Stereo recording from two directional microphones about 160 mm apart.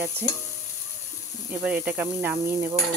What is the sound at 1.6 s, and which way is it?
Sizzle, 10° right (ahead or behind).